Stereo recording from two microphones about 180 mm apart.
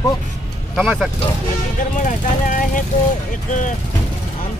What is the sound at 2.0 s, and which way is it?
Speech, 45° left (ahead or behind).